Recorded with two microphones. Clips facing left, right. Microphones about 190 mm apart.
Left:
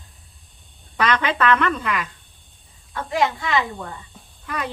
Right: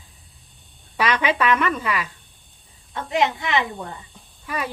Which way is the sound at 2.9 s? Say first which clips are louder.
Even; 20° right (ahead or behind).